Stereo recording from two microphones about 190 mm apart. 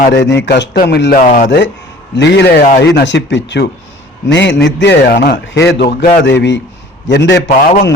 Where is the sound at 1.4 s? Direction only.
70° left (ahead or behind).